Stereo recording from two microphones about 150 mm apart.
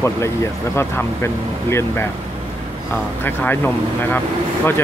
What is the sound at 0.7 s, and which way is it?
Speech, 15° left (ahead or behind).